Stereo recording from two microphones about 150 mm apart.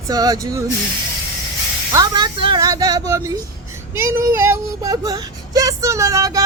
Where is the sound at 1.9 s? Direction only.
25° right (ahead or behind).